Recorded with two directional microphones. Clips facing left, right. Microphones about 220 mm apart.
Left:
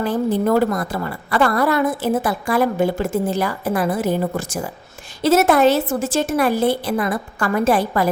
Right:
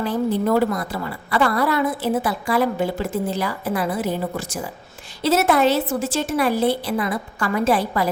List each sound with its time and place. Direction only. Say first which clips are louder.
0.0 s a woman's voice: left 2 dB; 50° left (ahead or behind)